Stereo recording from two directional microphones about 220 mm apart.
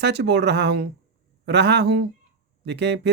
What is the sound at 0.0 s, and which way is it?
Speech, 50° right (ahead or behind).